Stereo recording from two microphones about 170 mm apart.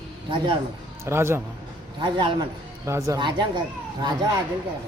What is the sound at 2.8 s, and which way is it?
Speech, 15° right (ahead or behind).